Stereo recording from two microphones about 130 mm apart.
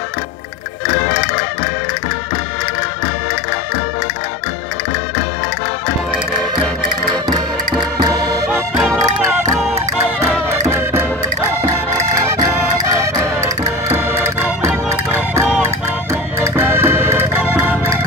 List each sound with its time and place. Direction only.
8.0 s music: 30° right (ahead or behind)
8.5 s music: 10° right (ahead or behind)
8.9 s music: centre (ahead or behind)
10.7 s music: 20° right (ahead or behind)